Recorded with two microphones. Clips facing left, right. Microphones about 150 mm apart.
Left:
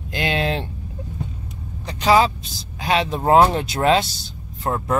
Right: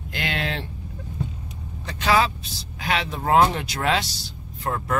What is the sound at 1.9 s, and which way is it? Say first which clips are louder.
Speech: left 5 dB; 30° left (ahead or behind).